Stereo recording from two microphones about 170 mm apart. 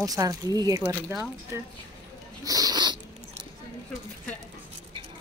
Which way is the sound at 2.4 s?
20° right (ahead or behind).